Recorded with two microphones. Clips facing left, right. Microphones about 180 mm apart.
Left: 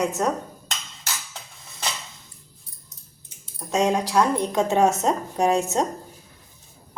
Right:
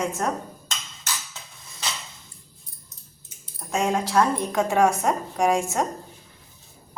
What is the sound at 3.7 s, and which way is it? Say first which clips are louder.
A woman's voice: left 2 dB; 20° left (ahead or behind).